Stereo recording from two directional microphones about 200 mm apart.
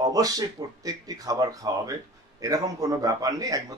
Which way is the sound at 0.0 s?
20° right (ahead or behind).